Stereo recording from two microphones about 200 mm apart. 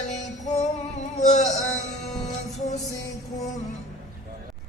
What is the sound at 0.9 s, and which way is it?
Music, 35° left (ahead or behind).